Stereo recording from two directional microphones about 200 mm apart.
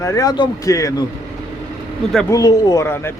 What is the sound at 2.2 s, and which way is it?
Speech, 20° left (ahead or behind).